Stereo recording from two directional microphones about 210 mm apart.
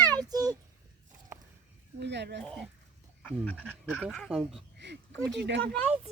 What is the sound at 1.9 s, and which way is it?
Speech, 55° right (ahead or behind).